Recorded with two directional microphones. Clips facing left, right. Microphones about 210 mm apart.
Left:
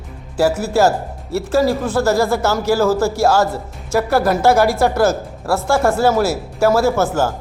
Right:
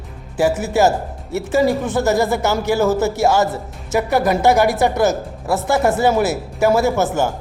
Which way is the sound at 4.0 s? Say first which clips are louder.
Left 1 dB; centre (ahead or behind).